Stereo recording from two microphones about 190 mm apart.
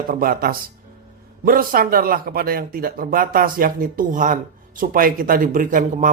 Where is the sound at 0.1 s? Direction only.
50° right (ahead or behind).